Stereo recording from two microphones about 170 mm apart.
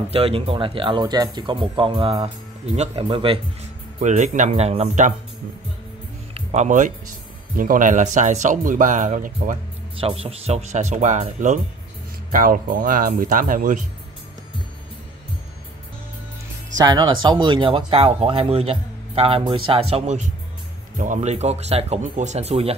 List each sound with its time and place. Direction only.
0.1 s speech: 35° right (ahead or behind)
4.0 s speech: 45° right (ahead or behind)
6.3 s speech: 40° right (ahead or behind)
9.9 s speech: 35° right (ahead or behind); by 13.8 s 50° right (ahead or behind)
16.7 s speech: 25° right (ahead or behind)